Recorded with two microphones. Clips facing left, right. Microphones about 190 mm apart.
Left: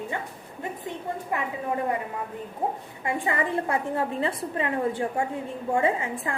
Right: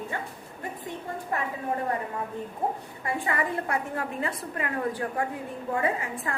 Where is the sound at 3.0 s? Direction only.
25° left (ahead or behind).